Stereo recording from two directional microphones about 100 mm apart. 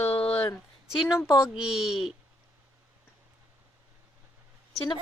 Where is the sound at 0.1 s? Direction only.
70° left (ahead or behind).